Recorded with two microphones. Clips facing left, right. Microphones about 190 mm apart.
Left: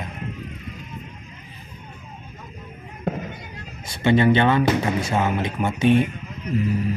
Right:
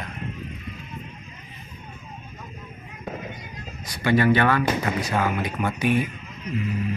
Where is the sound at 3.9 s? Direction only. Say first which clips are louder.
Left 2 dB; 25° left (ahead or behind).